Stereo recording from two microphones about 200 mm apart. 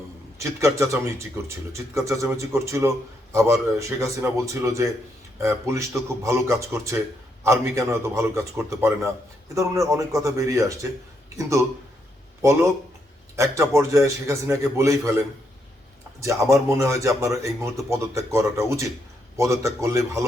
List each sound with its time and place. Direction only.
0.6 s speech: 15° right (ahead or behind)
12.4 s speech: 15° right (ahead or behind)
16.2 s speech: 15° right (ahead or behind)